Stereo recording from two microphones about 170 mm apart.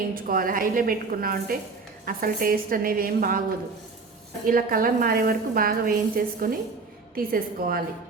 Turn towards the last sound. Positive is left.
turn(degrees=-60)  # may be behind; listen again after turning